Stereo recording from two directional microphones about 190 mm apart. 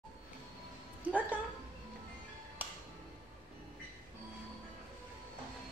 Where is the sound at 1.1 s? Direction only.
5° right (ahead or behind).